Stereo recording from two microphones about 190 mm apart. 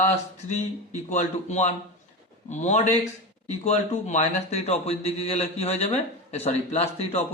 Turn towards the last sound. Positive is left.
turn(degrees=35)  # may be behind; listen again after turning